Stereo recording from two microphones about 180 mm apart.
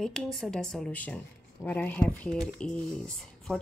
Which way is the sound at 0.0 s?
Centre (ahead or behind).